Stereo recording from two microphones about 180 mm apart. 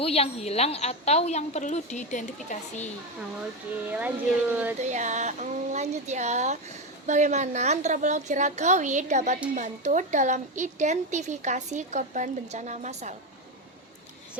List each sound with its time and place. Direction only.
0.0 s a woman's voice: 35° left (ahead or behind)
3.8 s speech: 10° right (ahead or behind)
4.8 s a woman's voice: 40° right (ahead or behind)